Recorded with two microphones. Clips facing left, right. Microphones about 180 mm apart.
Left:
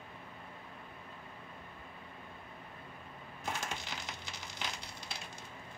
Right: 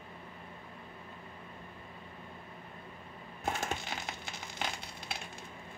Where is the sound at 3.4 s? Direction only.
55° right (ahead or behind).